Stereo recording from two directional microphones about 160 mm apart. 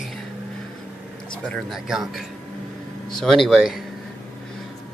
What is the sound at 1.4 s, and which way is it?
Speech, centre (ahead or behind).